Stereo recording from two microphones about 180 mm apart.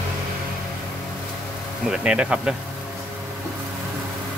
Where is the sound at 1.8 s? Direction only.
5° right (ahead or behind).